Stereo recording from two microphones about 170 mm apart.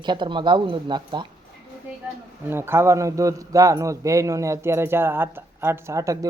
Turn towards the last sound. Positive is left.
turn(degrees=-20)  # may be behind; listen again after turning